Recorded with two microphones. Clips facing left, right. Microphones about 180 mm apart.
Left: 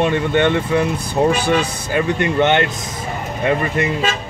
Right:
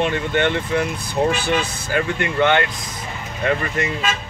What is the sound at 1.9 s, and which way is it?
Speech, 20° left (ahead or behind).